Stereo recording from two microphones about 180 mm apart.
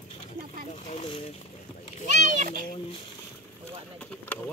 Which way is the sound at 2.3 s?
50° right (ahead or behind).